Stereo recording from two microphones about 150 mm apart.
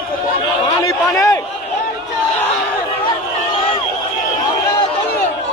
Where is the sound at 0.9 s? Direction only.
20° left (ahead or behind).